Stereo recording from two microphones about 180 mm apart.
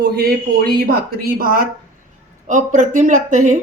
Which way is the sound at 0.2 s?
60° right (ahead or behind).